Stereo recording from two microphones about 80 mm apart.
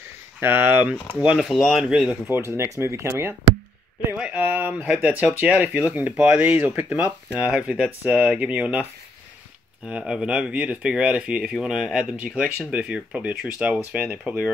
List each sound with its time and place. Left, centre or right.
0.4 s speech: right
1.2 s speech: centre
1.5 s speech: centre
2.2 s speech: right
4.2 s speech: right
4.8 s speech: centre
5.1 s speech: right
9.8 s speech: centre